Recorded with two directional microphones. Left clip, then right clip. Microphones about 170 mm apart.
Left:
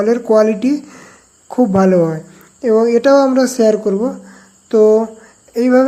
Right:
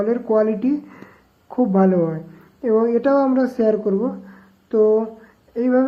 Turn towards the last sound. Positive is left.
turn(degrees=30)  # may be behind; listen again after turning